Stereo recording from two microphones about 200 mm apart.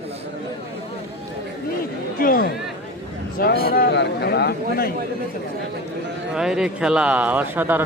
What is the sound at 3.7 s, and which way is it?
Speech, 55° left (ahead or behind).